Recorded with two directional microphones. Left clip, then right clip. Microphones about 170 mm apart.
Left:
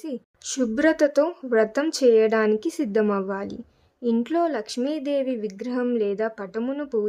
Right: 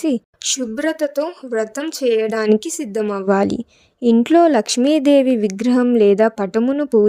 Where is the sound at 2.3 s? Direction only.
50° right (ahead or behind).